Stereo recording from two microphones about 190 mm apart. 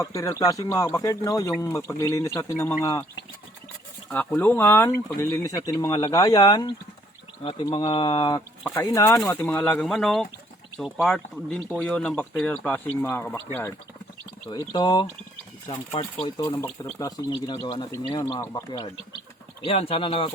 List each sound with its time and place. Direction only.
0.0 s speech: 15° left (ahead or behind)
4.1 s speech: 10° left (ahead or behind)
14.7 s speech: 25° left (ahead or behind)
19.6 s speech: 30° left (ahead or behind)